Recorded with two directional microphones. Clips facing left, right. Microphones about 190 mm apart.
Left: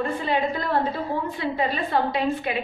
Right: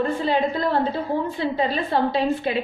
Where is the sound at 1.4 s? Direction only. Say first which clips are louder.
Right 2 dB; 30° right (ahead or behind).